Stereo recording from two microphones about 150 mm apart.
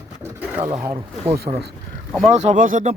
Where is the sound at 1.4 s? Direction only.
90° right.